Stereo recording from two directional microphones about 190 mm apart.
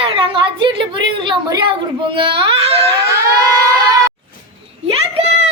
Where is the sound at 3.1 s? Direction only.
15° right (ahead or behind).